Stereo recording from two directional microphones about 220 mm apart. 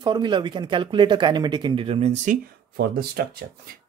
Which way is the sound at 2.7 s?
45° right (ahead or behind).